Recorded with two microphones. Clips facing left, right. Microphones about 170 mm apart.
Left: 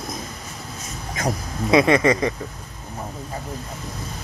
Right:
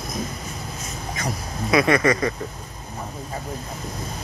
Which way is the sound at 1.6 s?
20° left (ahead or behind).